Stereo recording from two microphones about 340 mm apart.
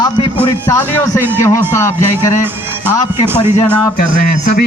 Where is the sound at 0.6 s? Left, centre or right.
Centre.